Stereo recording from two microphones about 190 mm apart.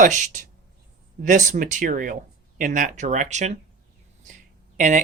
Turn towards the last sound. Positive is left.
turn(degrees=-40)  # may be behind; listen again after turning